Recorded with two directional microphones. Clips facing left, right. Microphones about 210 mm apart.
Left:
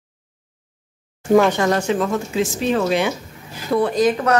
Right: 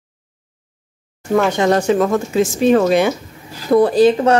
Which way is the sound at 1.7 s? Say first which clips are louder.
Right 5 dB; 45° right (ahead or behind).